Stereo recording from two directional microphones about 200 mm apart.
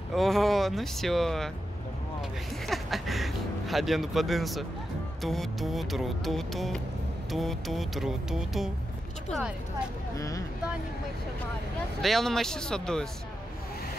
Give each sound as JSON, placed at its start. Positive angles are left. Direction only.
{"t": 0.1, "sound": "speech", "side_deg": 0}
{"t": 2.6, "sound": "speech", "side_deg": 0}
{"t": 10.1, "sound": "speech", "side_deg": 15}
{"t": 12.0, "sound": "speech", "side_deg": 0}